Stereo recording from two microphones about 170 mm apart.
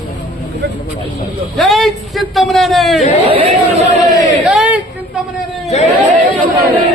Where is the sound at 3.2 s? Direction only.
35° right (ahead or behind).